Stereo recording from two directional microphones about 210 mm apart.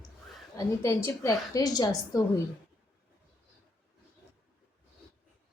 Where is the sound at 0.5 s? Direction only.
15° left (ahead or behind).